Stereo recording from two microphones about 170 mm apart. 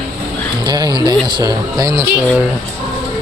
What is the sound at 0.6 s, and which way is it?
Speech, 25° right (ahead or behind).